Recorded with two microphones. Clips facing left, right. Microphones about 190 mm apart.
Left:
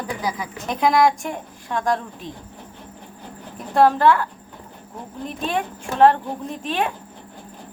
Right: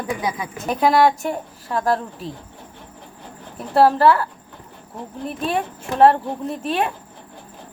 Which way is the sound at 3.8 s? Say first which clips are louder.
Right 1 dB; 5° right (ahead or behind).